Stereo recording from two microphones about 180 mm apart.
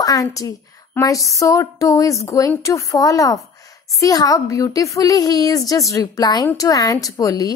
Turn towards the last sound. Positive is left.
turn(degrees=20)  # may be behind; listen again after turning